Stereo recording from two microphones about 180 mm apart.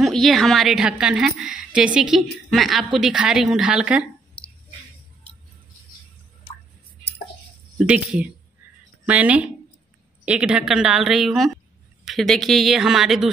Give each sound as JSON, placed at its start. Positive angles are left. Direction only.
{"t": 0.0, "sound": "a woman's voice", "side_deg": 0}
{"t": 4.4, "sound": "a sound", "side_deg": 5}
{"t": 7.8, "sound": "a woman's voice", "side_deg": -5}